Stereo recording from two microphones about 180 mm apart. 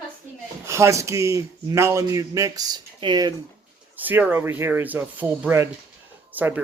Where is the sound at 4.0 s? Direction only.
10° right (ahead or behind).